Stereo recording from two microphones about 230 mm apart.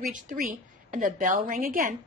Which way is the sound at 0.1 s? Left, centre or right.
Right.